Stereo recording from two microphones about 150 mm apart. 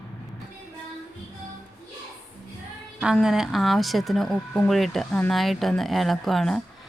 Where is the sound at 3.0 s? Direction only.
5° right (ahead or behind).